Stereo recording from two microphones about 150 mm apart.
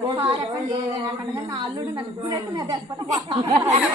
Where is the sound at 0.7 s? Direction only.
25° right (ahead or behind).